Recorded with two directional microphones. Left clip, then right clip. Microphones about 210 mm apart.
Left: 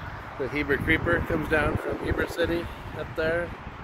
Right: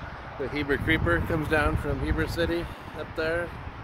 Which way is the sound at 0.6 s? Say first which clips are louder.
Left 1 dB; 5° left (ahead or behind).